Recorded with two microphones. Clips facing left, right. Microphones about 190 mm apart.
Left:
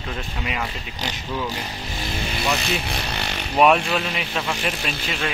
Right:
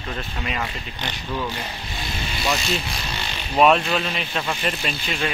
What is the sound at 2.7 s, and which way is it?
Vehicle, 60° left (ahead or behind).